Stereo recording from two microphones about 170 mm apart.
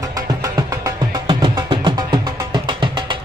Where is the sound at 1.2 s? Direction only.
30° right (ahead or behind).